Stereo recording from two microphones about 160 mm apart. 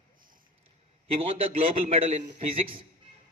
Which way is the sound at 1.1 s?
35° right (ahead or behind).